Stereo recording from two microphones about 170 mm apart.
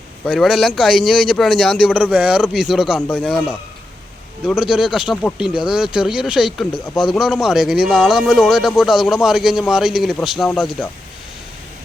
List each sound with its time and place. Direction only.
0.3 s speech: 5° left (ahead or behind)
4.7 s speech: 5° right (ahead or behind)